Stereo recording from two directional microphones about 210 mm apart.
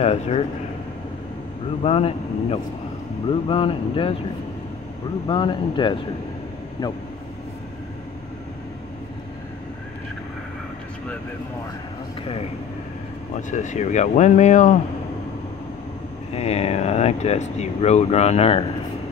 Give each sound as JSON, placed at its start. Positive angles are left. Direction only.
{"t": 0.0, "sound": "speech", "side_deg": 30}
{"t": 1.8, "sound": "speech", "side_deg": 25}
{"t": 5.3, "sound": "speech", "side_deg": 20}
{"t": 13.5, "sound": "speech", "side_deg": 35}
{"t": 16.3, "sound": "speech", "side_deg": 30}